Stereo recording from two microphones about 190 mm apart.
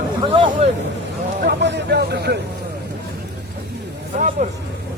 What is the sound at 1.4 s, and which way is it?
Speech, 60° right (ahead or behind).